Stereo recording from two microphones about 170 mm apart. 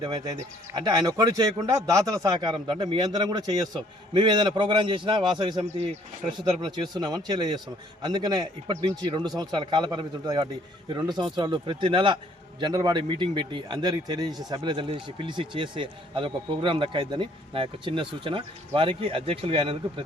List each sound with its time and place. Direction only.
0.9 s speech: 20° right (ahead or behind)